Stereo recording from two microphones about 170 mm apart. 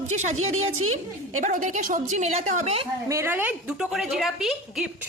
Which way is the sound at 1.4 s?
45° right (ahead or behind).